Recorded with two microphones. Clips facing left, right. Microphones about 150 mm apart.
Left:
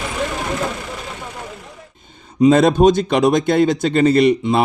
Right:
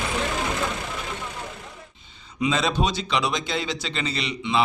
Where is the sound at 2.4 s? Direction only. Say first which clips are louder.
Left 12 dB; 50° left (ahead or behind).